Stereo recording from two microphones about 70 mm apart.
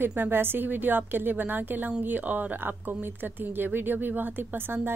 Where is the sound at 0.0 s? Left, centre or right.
Right.